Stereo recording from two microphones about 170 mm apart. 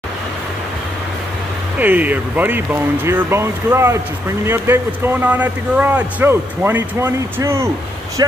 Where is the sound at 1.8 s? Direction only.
10° right (ahead or behind).